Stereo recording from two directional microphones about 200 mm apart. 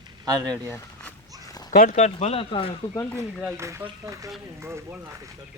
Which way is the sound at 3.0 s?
15° left (ahead or behind).